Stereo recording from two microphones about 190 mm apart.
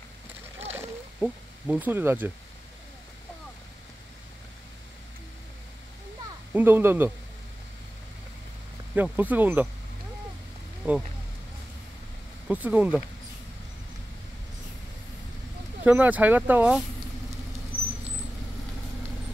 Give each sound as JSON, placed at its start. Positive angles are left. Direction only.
{"t": 0.7, "sound": "a sound", "side_deg": -10}
{"t": 6.5, "sound": "speech", "side_deg": -10}
{"t": 8.9, "sound": "speech", "side_deg": -10}
{"t": 12.4, "sound": "speech", "side_deg": -10}
{"t": 15.8, "sound": "speech", "side_deg": -10}